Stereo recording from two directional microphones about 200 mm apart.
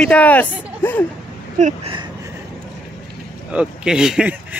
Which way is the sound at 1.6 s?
30° right (ahead or behind).